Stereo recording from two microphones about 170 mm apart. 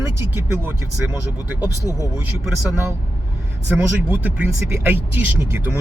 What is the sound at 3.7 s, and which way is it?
Speech, 5° right (ahead or behind).